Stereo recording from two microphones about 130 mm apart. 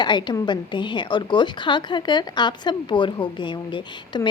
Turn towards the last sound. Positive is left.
turn(degrees=35)  # may be behind; listen again after turning